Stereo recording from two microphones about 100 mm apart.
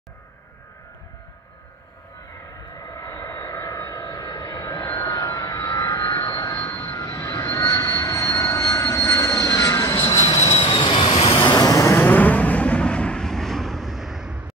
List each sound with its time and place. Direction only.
2.7 s vehicle: 35° left (ahead or behind)
6.7 s vehicle: 30° left (ahead or behind)
10.3 s vehicle: 90° left; by 11.2 s 55° left (ahead or behind)
11.5 s vehicle: 40° left (ahead or behind)
12.0 s vehicle: 20° left (ahead or behind); by 14.4 s 5° right (ahead or behind)